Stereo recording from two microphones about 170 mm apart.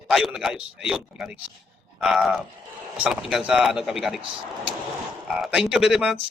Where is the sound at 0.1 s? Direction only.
Centre (ahead or behind).